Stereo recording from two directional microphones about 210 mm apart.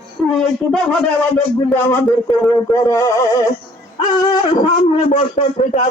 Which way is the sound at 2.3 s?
15° left (ahead or behind).